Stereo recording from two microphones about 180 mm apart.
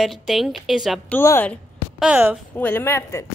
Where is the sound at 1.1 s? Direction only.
10° left (ahead or behind).